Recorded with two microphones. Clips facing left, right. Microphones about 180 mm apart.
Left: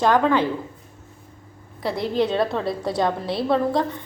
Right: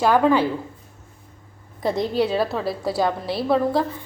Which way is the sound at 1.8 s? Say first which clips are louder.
Right 1 dB; 20° right (ahead or behind).